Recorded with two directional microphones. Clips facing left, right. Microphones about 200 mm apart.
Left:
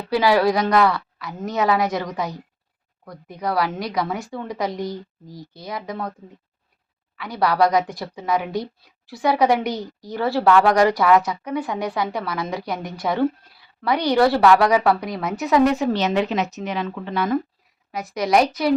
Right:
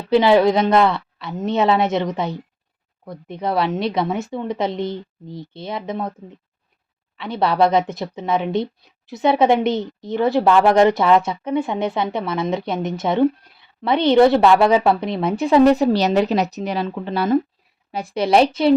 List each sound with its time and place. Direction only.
0.1 s a woman's voice: 25° right (ahead or behind)
7.2 s a woman's voice: 25° right (ahead or behind)